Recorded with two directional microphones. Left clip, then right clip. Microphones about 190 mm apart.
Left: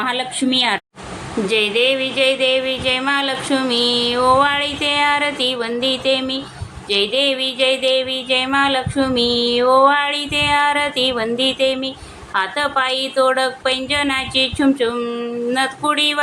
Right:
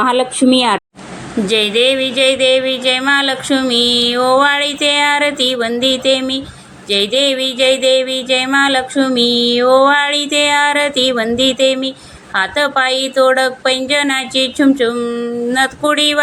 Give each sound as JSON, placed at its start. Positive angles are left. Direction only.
{"t": 0.0, "sound": "music", "side_deg": -10}